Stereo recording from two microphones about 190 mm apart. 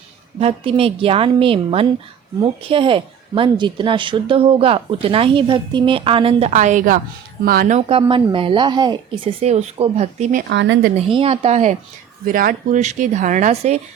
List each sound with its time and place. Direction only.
0.3 s speech: 30° right (ahead or behind); by 7.8 s 50° right (ahead or behind)
7.8 s speech: 30° right (ahead or behind)
10.5 s speech: 75° right (ahead or behind)
10.9 s speech: 30° right (ahead or behind)
12.2 s speech: 45° right (ahead or behind)